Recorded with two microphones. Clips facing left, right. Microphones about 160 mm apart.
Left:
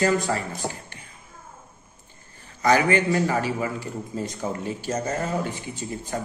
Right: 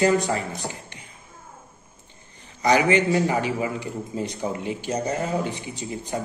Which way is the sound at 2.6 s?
20° right (ahead or behind).